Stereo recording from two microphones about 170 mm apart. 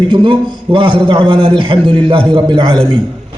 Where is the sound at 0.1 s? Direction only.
30° right (ahead or behind).